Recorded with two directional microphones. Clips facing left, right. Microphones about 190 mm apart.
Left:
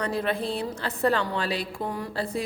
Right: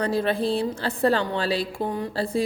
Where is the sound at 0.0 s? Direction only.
30° right (ahead or behind).